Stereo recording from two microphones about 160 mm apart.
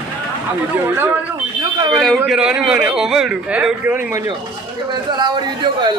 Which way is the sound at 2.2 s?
5° right (ahead or behind).